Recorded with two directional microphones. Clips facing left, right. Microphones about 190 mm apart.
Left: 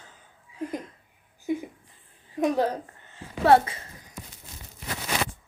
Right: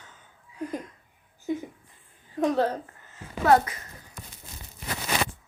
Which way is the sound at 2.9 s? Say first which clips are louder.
Left 1 dB; 30° left (ahead or behind).